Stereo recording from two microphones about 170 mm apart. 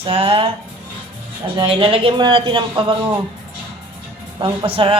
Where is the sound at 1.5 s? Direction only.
30° right (ahead or behind).